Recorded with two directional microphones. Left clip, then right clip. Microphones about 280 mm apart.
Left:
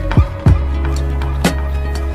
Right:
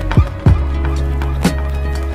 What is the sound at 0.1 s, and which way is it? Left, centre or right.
Music, centre.